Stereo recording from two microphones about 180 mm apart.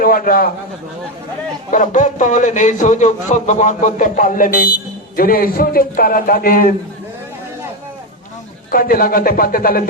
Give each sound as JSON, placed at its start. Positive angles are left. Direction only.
{"t": 0.0, "sound": "a man's voice", "side_deg": 55}
{"t": 1.7, "sound": "a man's voice", "side_deg": 45}
{"t": 8.7, "sound": "a man's voice", "side_deg": 55}